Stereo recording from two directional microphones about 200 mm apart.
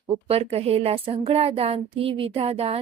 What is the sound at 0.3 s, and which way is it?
Speech, 30° right (ahead or behind).